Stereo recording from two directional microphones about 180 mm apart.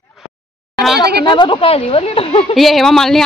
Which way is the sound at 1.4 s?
30° left (ahead or behind).